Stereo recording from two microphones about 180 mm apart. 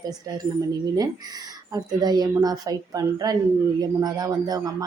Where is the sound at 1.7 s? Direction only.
20° right (ahead or behind).